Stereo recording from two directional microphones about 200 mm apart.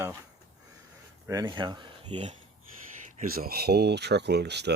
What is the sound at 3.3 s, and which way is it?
Speech, 50° right (ahead or behind).